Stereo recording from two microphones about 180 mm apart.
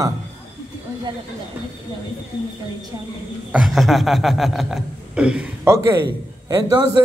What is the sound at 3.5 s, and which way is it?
A man's voice, centre (ahead or behind).